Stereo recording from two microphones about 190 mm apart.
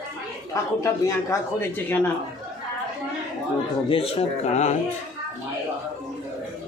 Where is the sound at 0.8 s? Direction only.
15° left (ahead or behind).